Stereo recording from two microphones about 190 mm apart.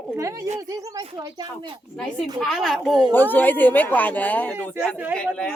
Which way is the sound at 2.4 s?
Centre (ahead or behind).